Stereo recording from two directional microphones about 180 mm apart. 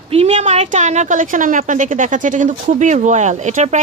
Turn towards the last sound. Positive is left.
turn(degrees=-40)  # may be behind; listen again after turning